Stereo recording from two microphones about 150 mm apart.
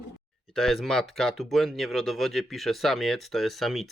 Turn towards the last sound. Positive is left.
turn(degrees=0)  # may be behind; listen again after turning